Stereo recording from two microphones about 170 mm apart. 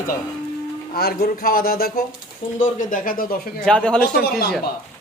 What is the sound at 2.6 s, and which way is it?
Speech, 50° left (ahead or behind).